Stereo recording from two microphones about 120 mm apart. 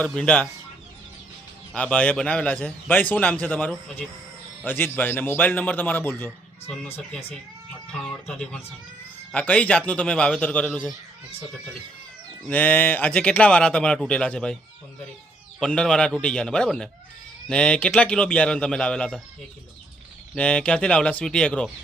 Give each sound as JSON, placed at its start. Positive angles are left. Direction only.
{"t": 0.1, "sound": "a man's voice", "side_deg": 10}
{"t": 1.7, "sound": "a man's voice", "side_deg": 10}
{"t": 4.6, "sound": "a man's voice", "side_deg": 15}
{"t": 7.9, "sound": "a man's voice", "side_deg": 5}
{"t": 12.5, "sound": "a man's voice", "side_deg": 10}
{"t": 15.6, "sound": "a man's voice", "side_deg": 5}
{"t": 20.3, "sound": "a man's voice", "side_deg": 10}